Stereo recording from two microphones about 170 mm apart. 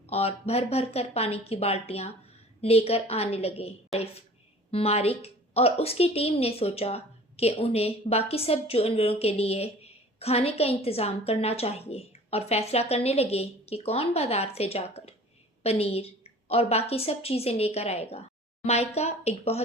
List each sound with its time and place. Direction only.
0.1 s a woman's voice: 35° left (ahead or behind)